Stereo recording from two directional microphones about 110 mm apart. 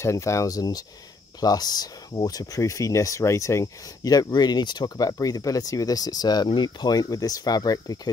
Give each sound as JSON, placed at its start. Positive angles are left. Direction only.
{"t": 0.0, "sound": "speech", "side_deg": 25}